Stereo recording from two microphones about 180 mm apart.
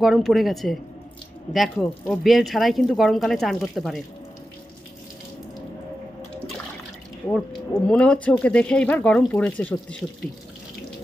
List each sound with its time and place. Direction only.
0.0 s speech: centre (ahead or behind)
7.8 s speech: 5° left (ahead or behind)